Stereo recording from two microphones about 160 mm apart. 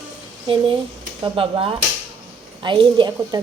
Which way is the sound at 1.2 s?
35° right (ahead or behind).